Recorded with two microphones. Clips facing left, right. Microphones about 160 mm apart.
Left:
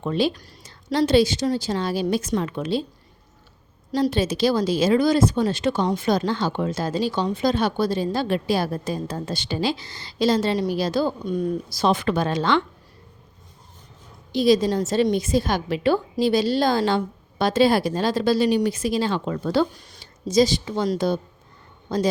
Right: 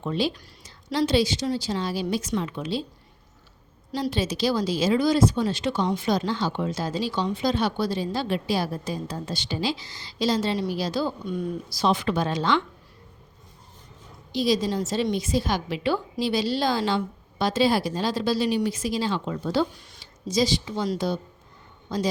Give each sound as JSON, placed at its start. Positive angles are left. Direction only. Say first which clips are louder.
{"t": 0.0, "sound": "speech", "louder": "left 4 dB", "side_deg": 55}
{"t": 3.9, "sound": "speech", "louder": "left 5 dB", "side_deg": 50}
{"t": 14.3, "sound": "speech", "louder": "left 5 dB", "side_deg": 55}
{"t": 19.7, "sound": "speech", "louder": "left 2 dB", "side_deg": 45}